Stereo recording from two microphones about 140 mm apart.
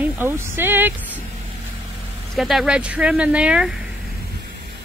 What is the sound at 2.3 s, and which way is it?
Speech, centre (ahead or behind).